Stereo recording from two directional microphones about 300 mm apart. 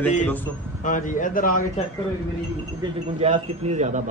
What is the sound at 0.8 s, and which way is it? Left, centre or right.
Speech, left.